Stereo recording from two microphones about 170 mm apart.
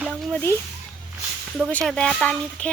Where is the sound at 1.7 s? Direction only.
5° left (ahead or behind).